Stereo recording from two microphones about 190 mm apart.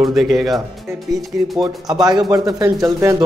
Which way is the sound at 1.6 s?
20° right (ahead or behind).